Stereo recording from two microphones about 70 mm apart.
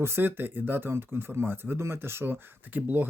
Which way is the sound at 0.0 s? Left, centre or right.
Right.